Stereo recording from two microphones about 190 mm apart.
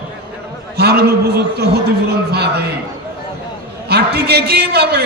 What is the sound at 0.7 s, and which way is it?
A man's voice, 55° right (ahead or behind).